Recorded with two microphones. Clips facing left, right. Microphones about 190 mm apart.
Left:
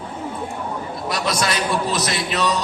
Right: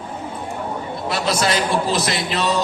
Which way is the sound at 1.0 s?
30° right (ahead or behind).